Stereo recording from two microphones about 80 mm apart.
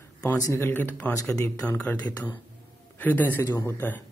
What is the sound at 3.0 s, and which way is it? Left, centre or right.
Speech, left.